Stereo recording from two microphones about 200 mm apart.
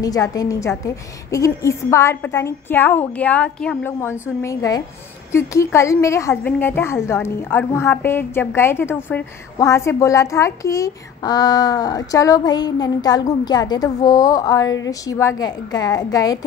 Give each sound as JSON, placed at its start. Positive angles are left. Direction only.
{"t": 0.0, "sound": "a woman's voice", "side_deg": 20}